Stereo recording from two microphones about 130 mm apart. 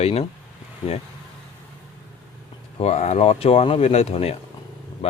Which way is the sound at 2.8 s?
55° left (ahead or behind).